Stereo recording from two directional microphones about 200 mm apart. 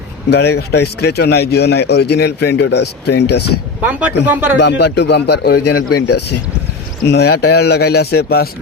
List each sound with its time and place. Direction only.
0.3 s speech: 55° left (ahead or behind)
3.8 s speech: 5° right (ahead or behind)
4.5 s speech: 55° left (ahead or behind)
7.0 s a man's voice: 55° left (ahead or behind)